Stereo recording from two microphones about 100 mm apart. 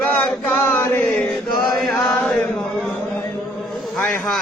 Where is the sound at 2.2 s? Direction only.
10° left (ahead or behind).